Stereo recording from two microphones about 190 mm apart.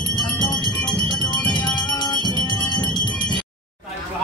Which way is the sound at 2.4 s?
25° left (ahead or behind).